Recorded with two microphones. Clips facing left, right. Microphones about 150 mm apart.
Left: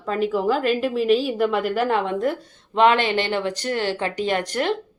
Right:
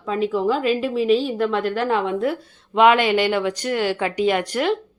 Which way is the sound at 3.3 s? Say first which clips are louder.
Right 2 dB; 35° left (ahead or behind).